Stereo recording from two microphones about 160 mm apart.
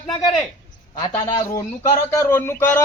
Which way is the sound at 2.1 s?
15° left (ahead or behind).